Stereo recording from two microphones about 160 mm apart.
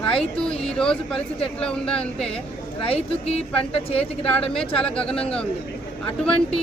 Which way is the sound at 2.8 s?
40° left (ahead or behind).